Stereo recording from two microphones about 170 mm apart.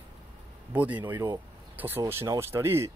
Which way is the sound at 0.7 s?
10° right (ahead or behind).